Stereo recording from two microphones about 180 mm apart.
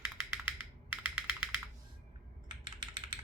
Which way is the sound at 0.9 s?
10° right (ahead or behind).